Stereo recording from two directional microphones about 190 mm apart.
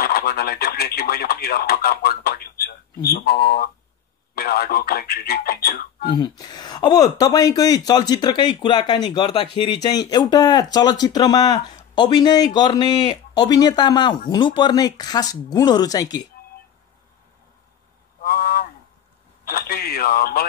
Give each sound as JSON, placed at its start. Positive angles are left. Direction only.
{"t": 0.0, "sound": "speech", "side_deg": 50}
{"t": 6.0, "sound": "speech", "side_deg": 20}
{"t": 18.2, "sound": "a sound", "side_deg": 50}
{"t": 19.4, "sound": "speech", "side_deg": 50}